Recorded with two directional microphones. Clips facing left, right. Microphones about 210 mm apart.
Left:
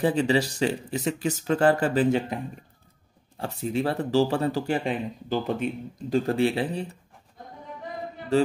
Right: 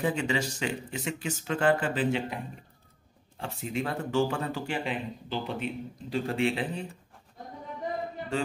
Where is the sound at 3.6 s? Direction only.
35° left (ahead or behind).